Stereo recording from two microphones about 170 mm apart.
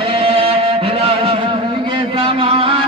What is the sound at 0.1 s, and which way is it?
Music, 30° right (ahead or behind).